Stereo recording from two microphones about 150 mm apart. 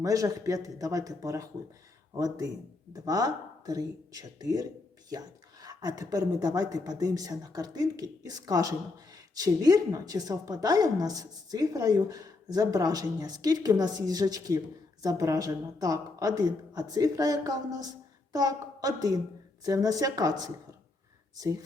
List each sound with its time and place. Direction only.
0.0 s a woman's voice: 20° right (ahead or behind)